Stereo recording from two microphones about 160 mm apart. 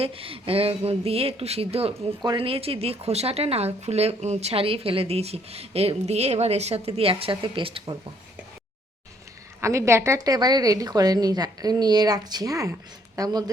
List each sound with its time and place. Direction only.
0.0 s speech: 35° right (ahead or behind)
9.6 s a woman's voice: 20° right (ahead or behind)